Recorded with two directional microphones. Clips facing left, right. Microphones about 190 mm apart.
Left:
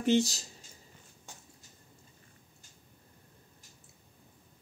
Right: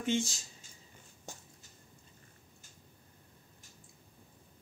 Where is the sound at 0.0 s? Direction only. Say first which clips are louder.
Left 6 dB; 40° left (ahead or behind).